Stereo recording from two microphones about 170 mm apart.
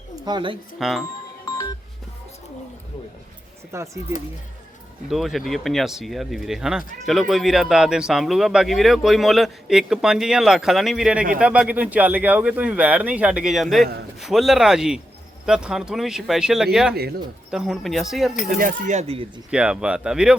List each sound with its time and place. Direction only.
0.3 s speech: 30° right (ahead or behind)
0.8 s speech: centre (ahead or behind)
3.7 s speech: 15° right (ahead or behind)
5.0 s speech: centre (ahead or behind)
16.9 s speech: 65° right (ahead or behind)
17.5 s speech: 5° right (ahead or behind)
18.6 s speech: 45° right (ahead or behind)
19.5 s speech: 5° right (ahead or behind)